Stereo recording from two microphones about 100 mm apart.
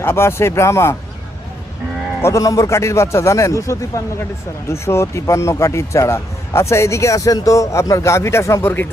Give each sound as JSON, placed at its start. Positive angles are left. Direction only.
{"t": 0.0, "sound": "speech", "side_deg": 25}
{"t": 2.2, "sound": "speech", "side_deg": 30}